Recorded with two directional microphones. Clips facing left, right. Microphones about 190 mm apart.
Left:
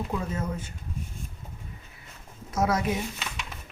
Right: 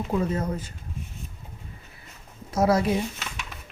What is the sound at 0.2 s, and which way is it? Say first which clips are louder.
Speech: right 5 dB; 35° right (ahead or behind).